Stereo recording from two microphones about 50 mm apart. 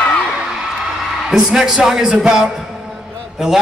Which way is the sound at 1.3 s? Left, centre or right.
Centre.